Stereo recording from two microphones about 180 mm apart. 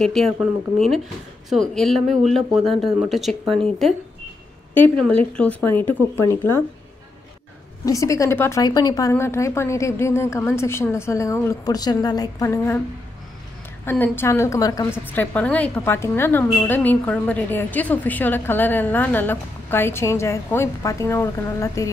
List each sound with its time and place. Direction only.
0.0 s speech: centre (ahead or behind)
4.7 s a woman's voice: 10° left (ahead or behind)
7.8 s a woman's voice: 15° left (ahead or behind)
13.8 s a woman's voice: 10° left (ahead or behind)
15.1 s a woman's voice: 10° left (ahead or behind)